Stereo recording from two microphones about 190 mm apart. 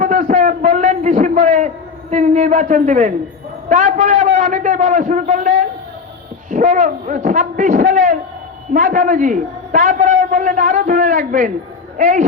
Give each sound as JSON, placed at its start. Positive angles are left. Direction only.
{"t": 0.0, "sound": "a sound", "side_deg": -45}
{"t": 3.7, "sound": "a man's voice", "side_deg": -40}
{"t": 6.5, "sound": "a man's voice", "side_deg": -40}